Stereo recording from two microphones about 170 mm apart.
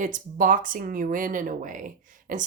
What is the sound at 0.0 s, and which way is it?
Speech, 50° right (ahead or behind).